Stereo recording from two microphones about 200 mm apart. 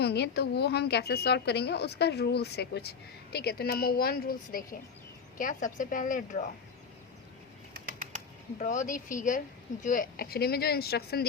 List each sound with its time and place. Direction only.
0.0 s a woman's voice: 55° left (ahead or behind)
8.5 s a woman's voice: 40° left (ahead or behind)